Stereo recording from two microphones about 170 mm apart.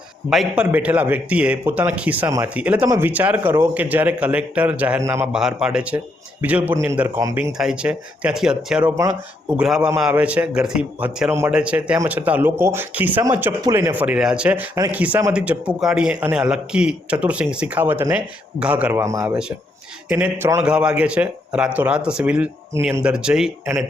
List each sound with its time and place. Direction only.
0.3 s a man's voice: 5° right (ahead or behind)
5.3 s a man's voice: 5° right (ahead or behind)
7.6 s speech: 5° right (ahead or behind)
8.8 s a man's voice: 20° right (ahead or behind)
9.6 s a man's voice: 5° right (ahead or behind)